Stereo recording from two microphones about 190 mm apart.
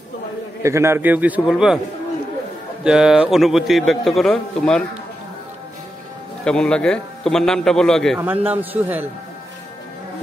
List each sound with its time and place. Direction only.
0.6 s a man's voice: 15° right (ahead or behind)
2.8 s a man's voice: 5° right (ahead or behind)
6.4 s a man's voice: 5° left (ahead or behind)
8.2 s a man's voice: 10° right (ahead or behind)